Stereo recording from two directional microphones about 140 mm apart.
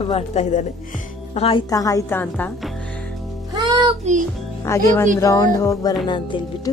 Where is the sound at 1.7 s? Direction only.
25° left (ahead or behind).